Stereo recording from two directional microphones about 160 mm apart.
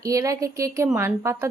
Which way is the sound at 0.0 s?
20° right (ahead or behind).